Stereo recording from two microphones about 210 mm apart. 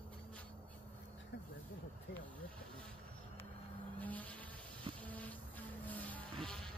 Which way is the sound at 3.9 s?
5° left (ahead or behind).